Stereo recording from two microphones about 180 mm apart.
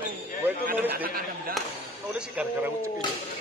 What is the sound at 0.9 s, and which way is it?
Speech, 55° right (ahead or behind).